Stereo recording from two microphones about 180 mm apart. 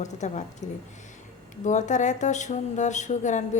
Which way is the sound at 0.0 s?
40° left (ahead or behind).